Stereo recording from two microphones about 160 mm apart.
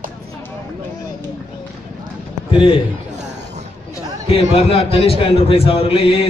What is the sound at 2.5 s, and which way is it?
Speech, 35° left (ahead or behind).